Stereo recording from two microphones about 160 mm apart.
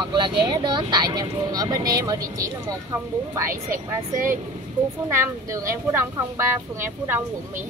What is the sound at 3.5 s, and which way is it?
Speech, 55° right (ahead or behind).